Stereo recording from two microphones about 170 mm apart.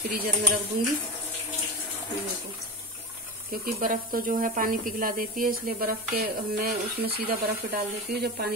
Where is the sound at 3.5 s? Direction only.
55° right (ahead or behind).